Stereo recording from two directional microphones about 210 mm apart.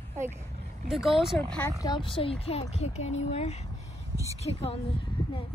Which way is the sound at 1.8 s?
20° left (ahead or behind).